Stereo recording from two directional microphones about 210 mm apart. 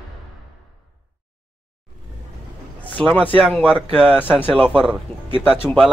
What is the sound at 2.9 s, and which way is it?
Speech, 5° left (ahead or behind).